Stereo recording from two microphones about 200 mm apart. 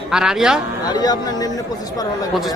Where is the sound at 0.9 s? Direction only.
20° left (ahead or behind).